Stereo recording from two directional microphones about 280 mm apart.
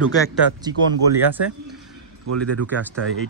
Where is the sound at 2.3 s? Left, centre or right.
Right.